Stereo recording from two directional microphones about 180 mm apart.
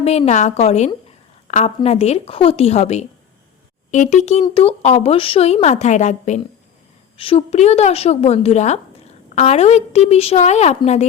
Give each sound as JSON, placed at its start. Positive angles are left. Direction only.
{"t": 0.0, "sound": "a woman's voice", "side_deg": 35}